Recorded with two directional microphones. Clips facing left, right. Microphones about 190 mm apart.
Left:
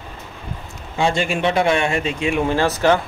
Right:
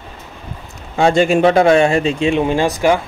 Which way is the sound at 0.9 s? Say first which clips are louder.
Right 7 dB; 40° right (ahead or behind).